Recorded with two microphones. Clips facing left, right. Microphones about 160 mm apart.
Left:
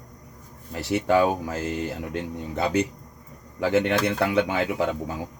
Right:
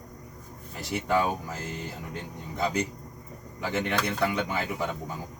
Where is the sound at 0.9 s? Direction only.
90° left.